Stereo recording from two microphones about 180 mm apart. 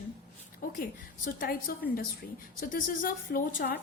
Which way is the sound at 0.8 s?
55° left (ahead or behind).